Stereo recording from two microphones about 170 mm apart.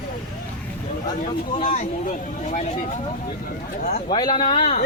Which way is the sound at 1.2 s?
45° left (ahead or behind).